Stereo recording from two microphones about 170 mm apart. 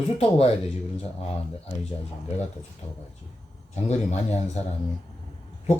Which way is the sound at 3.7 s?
40° left (ahead or behind).